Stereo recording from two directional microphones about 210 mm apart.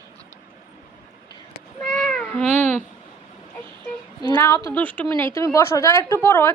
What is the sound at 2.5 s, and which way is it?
Speech, 35° right (ahead or behind).